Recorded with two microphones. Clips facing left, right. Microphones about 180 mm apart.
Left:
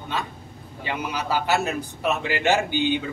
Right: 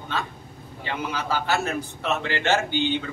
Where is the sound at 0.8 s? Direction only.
15° left (ahead or behind).